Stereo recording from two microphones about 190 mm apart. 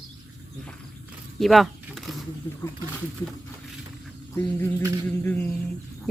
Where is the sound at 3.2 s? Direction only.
20° left (ahead or behind).